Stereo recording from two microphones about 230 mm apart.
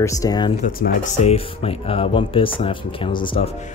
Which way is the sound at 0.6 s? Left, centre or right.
Left.